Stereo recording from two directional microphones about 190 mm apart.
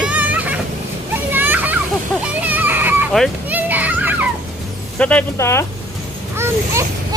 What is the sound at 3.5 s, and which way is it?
Children playing, 10° right (ahead or behind).